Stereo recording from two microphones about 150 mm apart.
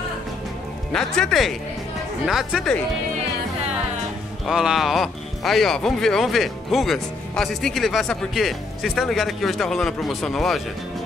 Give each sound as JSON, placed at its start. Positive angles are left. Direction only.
{"t": 0.9, "sound": "speech", "side_deg": 5}
{"t": 4.5, "sound": "speech", "side_deg": -5}